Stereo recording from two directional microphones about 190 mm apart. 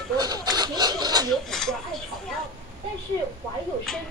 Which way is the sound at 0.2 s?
20° right (ahead or behind).